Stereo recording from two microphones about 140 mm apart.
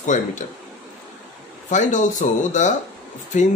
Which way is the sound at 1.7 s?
60° left (ahead or behind).